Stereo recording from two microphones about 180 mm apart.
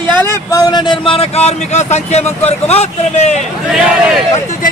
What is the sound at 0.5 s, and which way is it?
A man's voice, 20° left (ahead or behind).